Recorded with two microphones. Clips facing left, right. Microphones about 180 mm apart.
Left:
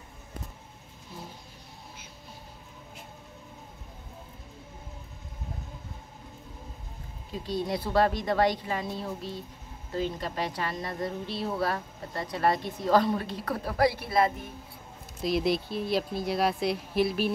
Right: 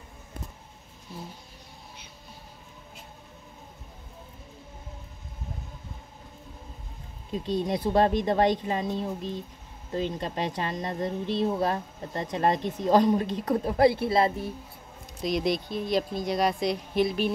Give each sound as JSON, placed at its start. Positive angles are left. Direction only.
{"t": 7.4, "sound": "a woman's voice", "side_deg": -20}
{"t": 15.2, "sound": "speech", "side_deg": 5}